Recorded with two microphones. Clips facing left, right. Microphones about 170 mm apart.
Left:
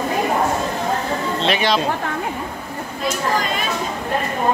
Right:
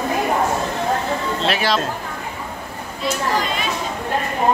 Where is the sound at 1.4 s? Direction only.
Centre (ahead or behind).